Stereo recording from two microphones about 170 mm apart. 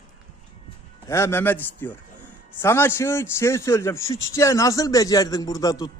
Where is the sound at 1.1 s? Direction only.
15° left (ahead or behind).